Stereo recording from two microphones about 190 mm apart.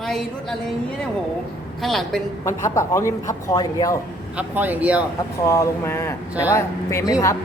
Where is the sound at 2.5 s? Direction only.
15° left (ahead or behind).